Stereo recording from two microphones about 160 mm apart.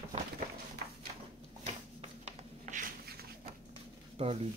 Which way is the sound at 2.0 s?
45° right (ahead or behind).